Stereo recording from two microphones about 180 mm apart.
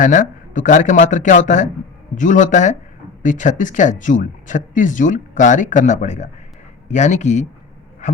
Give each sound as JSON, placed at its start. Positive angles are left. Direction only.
{"t": 0.0, "sound": "speech", "side_deg": 45}
{"t": 8.0, "sound": "dog", "side_deg": 40}